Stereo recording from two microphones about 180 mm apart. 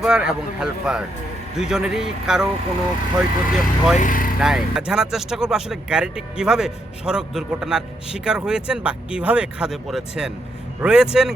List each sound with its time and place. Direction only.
0.0 s speech: 5° right (ahead or behind)
3.9 s speech: 45° left (ahead or behind)
4.4 s speech: 5° right (ahead or behind)